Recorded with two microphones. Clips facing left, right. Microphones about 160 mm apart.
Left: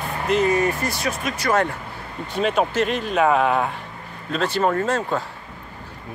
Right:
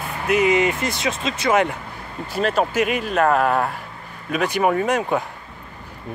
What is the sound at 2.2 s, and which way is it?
Speech, 5° right (ahead or behind).